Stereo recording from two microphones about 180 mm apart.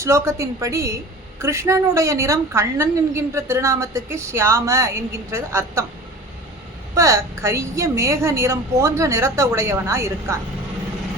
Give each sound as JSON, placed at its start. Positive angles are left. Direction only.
{"t": 0.0, "sound": "a woman's voice", "side_deg": -15}
{"t": 6.9, "sound": "a woman's voice", "side_deg": -15}